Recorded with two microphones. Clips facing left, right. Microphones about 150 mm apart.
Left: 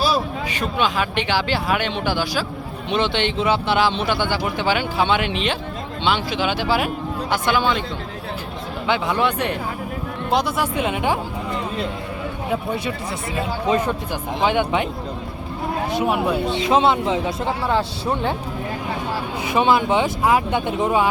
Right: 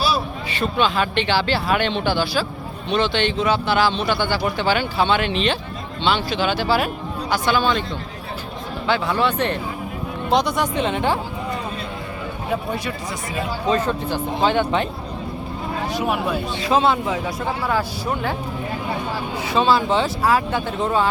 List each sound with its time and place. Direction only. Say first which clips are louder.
0.8 s speech: right 1 dB; 10° left (ahead or behind)
8.9 s speech: even; 15° left (ahead or behind)
13.7 s speech: right 1 dB; 15° left (ahead or behind)
15.9 s speech: left 2 dB; 20° left (ahead or behind)
19.5 s speech: left 1 dB; 15° left (ahead or behind)